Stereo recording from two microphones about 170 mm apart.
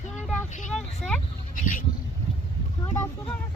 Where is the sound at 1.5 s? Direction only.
50° left (ahead or behind).